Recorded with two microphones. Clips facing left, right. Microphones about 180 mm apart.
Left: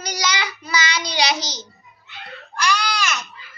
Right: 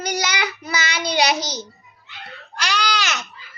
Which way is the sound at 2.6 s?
75° right (ahead or behind).